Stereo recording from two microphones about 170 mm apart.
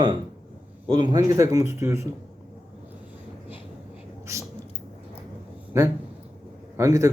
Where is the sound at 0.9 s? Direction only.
25° right (ahead or behind).